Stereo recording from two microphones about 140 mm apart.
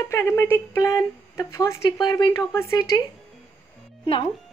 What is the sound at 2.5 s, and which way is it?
Speech, 20° left (ahead or behind).